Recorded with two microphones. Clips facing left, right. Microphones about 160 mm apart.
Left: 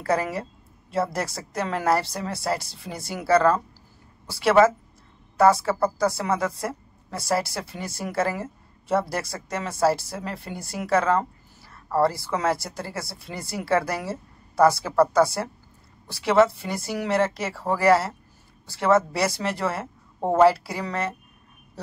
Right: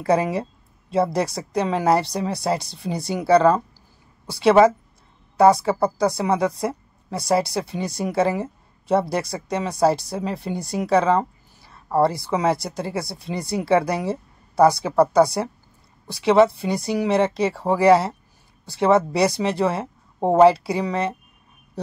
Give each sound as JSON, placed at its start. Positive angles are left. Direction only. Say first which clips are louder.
{"t": 0.0, "sound": "a woman's voice", "louder": "right 5 dB", "side_deg": -20}